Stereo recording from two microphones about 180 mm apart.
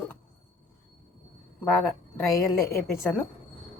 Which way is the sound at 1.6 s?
15° left (ahead or behind).